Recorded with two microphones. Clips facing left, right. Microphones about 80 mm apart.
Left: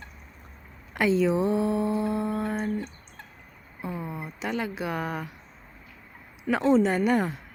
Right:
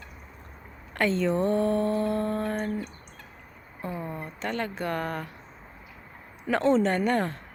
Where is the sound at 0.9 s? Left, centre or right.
Centre.